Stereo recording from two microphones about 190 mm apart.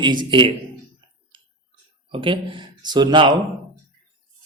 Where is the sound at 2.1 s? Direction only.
25° right (ahead or behind).